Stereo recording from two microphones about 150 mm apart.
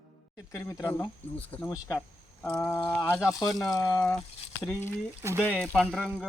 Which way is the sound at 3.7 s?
20° left (ahead or behind).